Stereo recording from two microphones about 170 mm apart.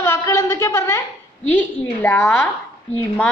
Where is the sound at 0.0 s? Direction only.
15° left (ahead or behind).